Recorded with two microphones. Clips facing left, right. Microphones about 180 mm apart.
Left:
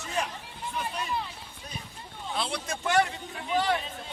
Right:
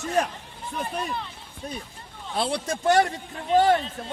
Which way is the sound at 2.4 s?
35° right (ahead or behind).